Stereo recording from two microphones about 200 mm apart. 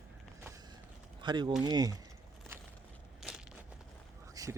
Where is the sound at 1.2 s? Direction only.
20° right (ahead or behind).